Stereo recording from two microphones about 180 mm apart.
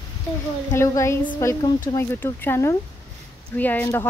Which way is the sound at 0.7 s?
15° left (ahead or behind).